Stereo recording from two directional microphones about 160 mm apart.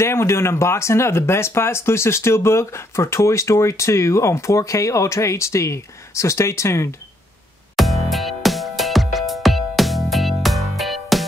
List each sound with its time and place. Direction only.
0.0 s speech: 15° left (ahead or behind)
7.7 s music: centre (ahead or behind)